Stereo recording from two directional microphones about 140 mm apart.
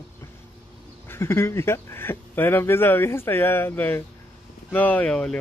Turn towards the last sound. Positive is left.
turn(degrees=10)  # may be behind; listen again after turning